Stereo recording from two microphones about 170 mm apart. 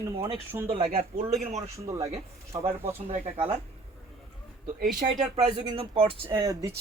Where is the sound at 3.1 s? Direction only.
35° right (ahead or behind).